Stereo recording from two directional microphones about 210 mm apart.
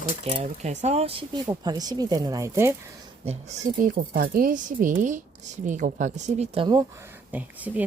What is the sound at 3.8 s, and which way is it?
Speech, 40° right (ahead or behind).